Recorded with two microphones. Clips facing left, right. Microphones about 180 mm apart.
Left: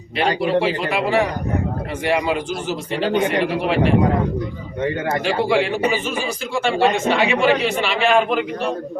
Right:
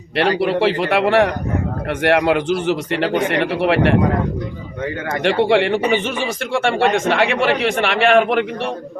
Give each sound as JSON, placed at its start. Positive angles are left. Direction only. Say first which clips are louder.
{"t": 0.3, "sound": "a man's voice", "louder": "right 2 dB", "side_deg": -65}
{"t": 5.2, "sound": "a man's voice", "louder": "right 5 dB", "side_deg": -65}